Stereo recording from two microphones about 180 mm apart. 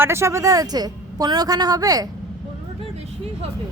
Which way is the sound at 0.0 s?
15° right (ahead or behind).